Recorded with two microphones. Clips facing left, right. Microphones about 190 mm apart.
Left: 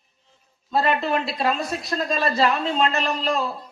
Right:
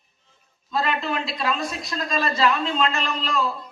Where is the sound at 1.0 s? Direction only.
50° left (ahead or behind).